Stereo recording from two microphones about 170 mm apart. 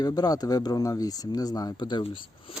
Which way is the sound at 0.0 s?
20° left (ahead or behind).